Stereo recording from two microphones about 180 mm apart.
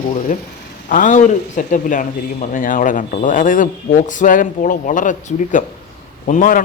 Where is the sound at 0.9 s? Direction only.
45° left (ahead or behind).